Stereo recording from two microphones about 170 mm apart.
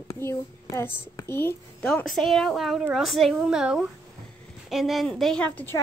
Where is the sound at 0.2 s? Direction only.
15° left (ahead or behind).